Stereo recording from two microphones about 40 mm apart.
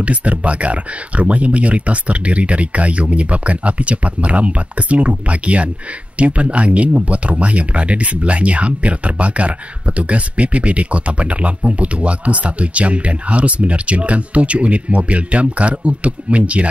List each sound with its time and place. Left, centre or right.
0.0 s speech: right